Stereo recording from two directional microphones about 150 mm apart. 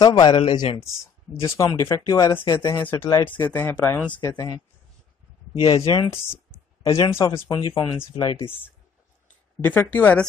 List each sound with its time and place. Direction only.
0.0 s speech: 30° left (ahead or behind)
1.3 s speech: 20° left (ahead or behind)
4.3 s speech: 30° left (ahead or behind)
6.9 s speech: 20° left (ahead or behind)
9.6 s speech: 15° left (ahead or behind)